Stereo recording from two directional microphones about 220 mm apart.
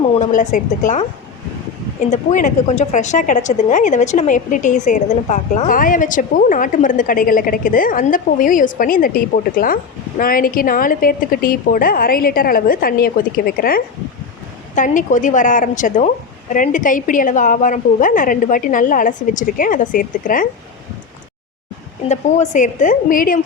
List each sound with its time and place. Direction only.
0.2 s a woman's voice: 35° left (ahead or behind)
2.0 s a woman's voice: 35° left (ahead or behind)
22.1 s a woman's voice: 35° left (ahead or behind)